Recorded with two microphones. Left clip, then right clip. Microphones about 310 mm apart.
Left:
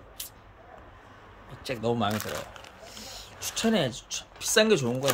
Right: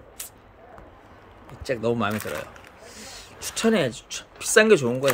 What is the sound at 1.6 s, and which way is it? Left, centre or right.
Speech, centre.